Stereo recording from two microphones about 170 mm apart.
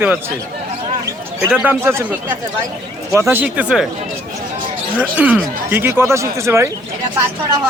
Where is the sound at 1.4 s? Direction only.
10° right (ahead or behind).